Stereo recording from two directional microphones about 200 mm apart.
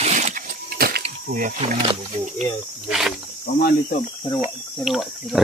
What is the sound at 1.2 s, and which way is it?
Speech, 45° right (ahead or behind).